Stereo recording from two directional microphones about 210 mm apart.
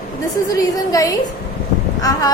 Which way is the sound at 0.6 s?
15° left (ahead or behind).